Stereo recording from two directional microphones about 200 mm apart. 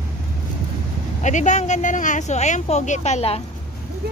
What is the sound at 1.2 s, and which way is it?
Speech, 35° left (ahead or behind).